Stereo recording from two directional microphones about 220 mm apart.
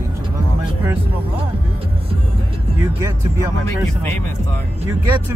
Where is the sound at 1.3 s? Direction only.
25° right (ahead or behind).